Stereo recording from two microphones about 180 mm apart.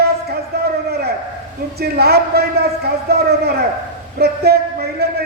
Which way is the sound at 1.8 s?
60° right (ahead or behind).